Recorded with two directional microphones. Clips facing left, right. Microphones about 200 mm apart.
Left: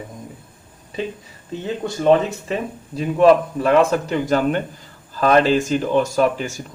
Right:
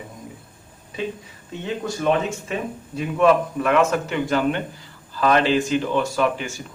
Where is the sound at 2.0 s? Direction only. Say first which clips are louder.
Left 6 dB; 35° left (ahead or behind).